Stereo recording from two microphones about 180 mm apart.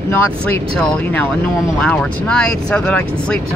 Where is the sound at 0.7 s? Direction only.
10° left (ahead or behind).